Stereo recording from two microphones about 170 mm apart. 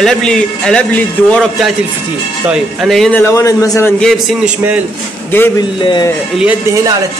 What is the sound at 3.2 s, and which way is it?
Speech, 20° left (ahead or behind).